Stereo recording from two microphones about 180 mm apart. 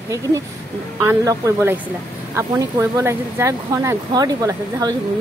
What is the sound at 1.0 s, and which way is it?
A woman's voice, 15° right (ahead or behind).